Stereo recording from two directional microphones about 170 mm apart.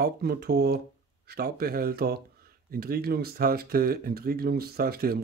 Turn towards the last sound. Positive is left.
turn(degrees=-65)  # may be behind; listen again after turning